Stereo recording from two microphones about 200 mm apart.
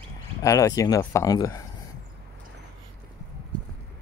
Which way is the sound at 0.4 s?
15° left (ahead or behind).